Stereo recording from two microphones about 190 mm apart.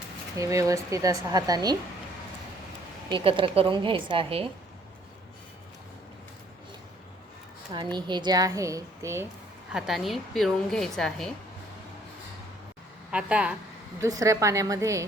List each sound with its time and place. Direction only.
0.3 s speech: 15° right (ahead or behind)
3.1 s speech: 25° right (ahead or behind)
7.7 s speech: 25° right (ahead or behind)
9.7 s a woman's voice: centre (ahead or behind)
13.1 s a woman's voice: 5° right (ahead or behind)
14.0 s speech: 15° right (ahead or behind)